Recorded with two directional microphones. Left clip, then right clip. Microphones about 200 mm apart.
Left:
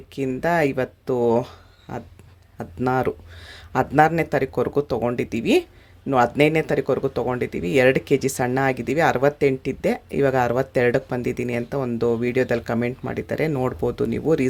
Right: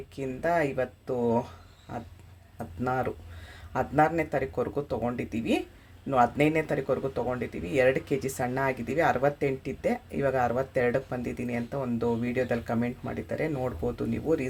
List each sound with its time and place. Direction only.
0.2 s speech: 45° left (ahead or behind)
2.6 s speech: 45° left (ahead or behind)